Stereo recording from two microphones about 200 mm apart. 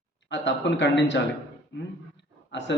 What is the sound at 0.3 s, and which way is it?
Speech, 65° left (ahead or behind).